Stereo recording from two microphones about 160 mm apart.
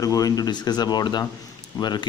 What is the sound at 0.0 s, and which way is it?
Speech, 20° left (ahead or behind).